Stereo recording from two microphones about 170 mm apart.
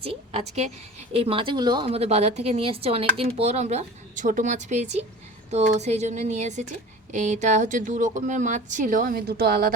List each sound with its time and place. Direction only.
0.0 s a woman's voice: 35° right (ahead or behind); by 9.7 s 60° right (ahead or behind)